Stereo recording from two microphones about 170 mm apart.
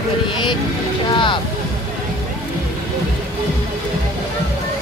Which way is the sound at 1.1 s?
30° left (ahead or behind).